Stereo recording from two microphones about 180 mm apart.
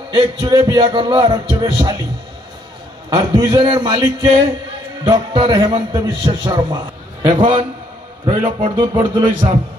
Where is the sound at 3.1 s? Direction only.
20° right (ahead or behind).